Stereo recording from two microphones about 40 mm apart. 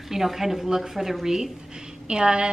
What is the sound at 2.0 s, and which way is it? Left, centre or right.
Speech, right.